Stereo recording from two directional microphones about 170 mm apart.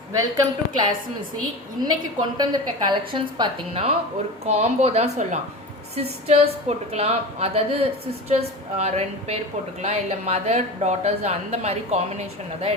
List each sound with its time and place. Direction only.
0.1 s a woman's voice: 20° right (ahead or behind); by 12.0 s 40° right (ahead or behind)